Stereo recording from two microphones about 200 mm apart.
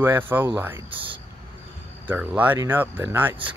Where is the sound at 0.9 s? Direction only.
25° right (ahead or behind).